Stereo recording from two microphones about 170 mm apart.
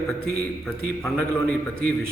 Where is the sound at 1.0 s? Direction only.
5° left (ahead or behind).